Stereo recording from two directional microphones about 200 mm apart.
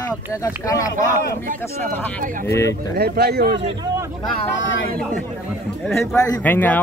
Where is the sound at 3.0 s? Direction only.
50° right (ahead or behind).